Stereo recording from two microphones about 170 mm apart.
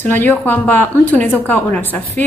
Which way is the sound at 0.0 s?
10° left (ahead or behind).